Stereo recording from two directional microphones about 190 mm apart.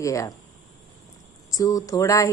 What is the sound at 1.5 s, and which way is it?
Speech, 20° left (ahead or behind).